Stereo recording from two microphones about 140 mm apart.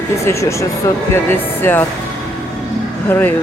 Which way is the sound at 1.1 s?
15° left (ahead or behind).